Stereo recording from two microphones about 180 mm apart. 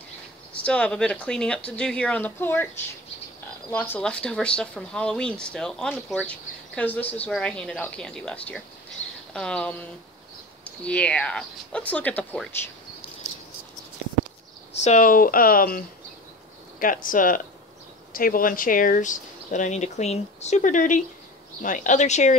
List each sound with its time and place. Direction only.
0.6 s speech: 5° left (ahead or behind)
3.7 s speech: 10° left (ahead or behind)
14.7 s speech: 40° left (ahead or behind)
16.8 s speech: 50° left (ahead or behind)